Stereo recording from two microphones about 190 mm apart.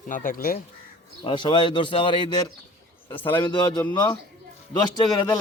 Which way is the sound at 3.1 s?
10° left (ahead or behind).